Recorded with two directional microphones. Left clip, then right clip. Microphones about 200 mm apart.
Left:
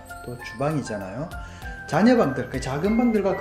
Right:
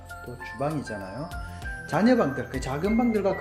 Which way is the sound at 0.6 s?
5° right (ahead or behind).